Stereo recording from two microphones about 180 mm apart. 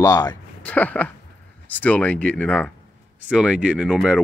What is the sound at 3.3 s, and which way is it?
Speech, 5° right (ahead or behind).